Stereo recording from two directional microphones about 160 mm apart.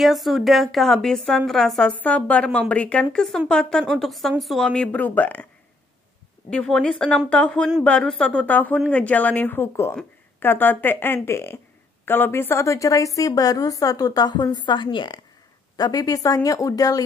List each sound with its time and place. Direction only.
0.0 s a woman's voice: centre (ahead or behind)
6.5 s a woman's voice: 5° left (ahead or behind); by 17.0 s 20° left (ahead or behind)